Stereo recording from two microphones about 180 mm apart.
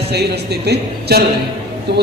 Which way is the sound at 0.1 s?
65° right (ahead or behind).